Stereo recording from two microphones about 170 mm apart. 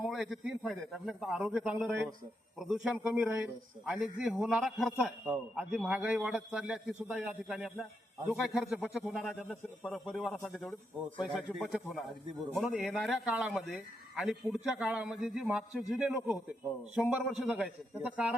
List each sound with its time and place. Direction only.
0.1 s a man's voice: centre (ahead or behind)